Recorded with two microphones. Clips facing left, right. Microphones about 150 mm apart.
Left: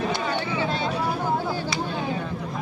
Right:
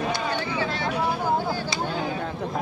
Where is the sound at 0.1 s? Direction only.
25° left (ahead or behind).